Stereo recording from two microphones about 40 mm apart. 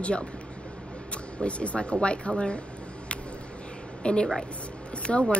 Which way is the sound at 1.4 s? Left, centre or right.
Left.